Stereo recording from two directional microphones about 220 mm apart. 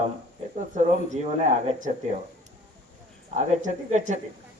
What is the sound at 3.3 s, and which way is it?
Speech, 35° right (ahead or behind).